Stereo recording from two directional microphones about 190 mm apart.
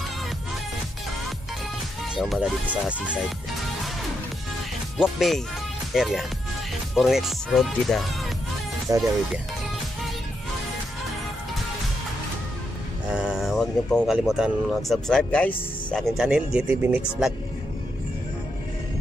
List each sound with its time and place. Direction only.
2.1 s speech: centre (ahead or behind)
4.9 s speech: centre (ahead or behind)
8.9 s speech: 15° right (ahead or behind)
13.1 s vehicle: 5° right (ahead or behind)
14.9 s speech: centre (ahead or behind)